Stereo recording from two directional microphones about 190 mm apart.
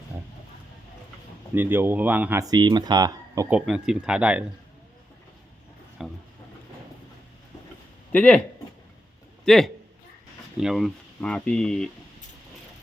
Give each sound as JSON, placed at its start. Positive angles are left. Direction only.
{"t": 1.5, "sound": "speech", "side_deg": -10}
{"t": 3.5, "sound": "speech", "side_deg": -5}
{"t": 6.0, "sound": "speech", "side_deg": 0}
{"t": 8.1, "sound": "speech", "side_deg": 5}
{"t": 9.4, "sound": "a man's voice", "side_deg": 0}